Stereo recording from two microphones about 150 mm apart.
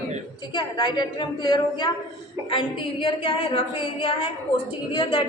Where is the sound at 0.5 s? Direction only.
30° left (ahead or behind).